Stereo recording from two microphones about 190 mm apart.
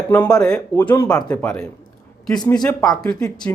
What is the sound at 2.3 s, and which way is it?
Speech, 20° left (ahead or behind).